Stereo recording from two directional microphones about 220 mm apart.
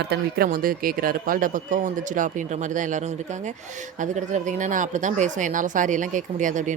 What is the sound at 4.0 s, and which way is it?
Speech, 35° right (ahead or behind).